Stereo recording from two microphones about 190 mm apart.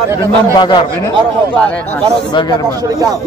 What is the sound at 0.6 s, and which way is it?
Speech, 25° left (ahead or behind).